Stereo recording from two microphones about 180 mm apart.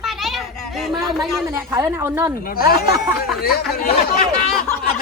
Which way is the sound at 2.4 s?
55° left (ahead or behind).